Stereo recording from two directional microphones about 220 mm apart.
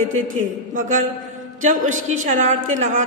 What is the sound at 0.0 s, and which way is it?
A woman's voice, 35° right (ahead or behind).